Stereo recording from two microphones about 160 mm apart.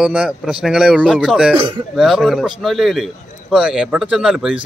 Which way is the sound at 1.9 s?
Centre (ahead or behind).